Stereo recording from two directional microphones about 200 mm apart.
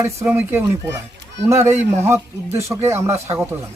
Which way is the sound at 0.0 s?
10° right (ahead or behind).